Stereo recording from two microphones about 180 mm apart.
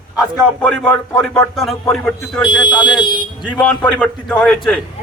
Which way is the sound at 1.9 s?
5° left (ahead or behind).